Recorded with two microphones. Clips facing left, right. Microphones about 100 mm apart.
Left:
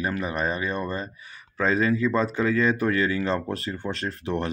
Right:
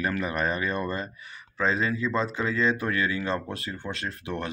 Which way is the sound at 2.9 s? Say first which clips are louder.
Left 3 dB; 30° left (ahead or behind).